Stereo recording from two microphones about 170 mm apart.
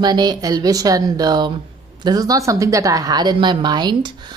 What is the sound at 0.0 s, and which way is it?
A woman's voice, 25° right (ahead or behind).